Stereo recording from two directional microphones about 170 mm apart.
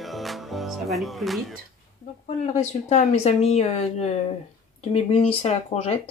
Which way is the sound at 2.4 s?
40° left (ahead or behind).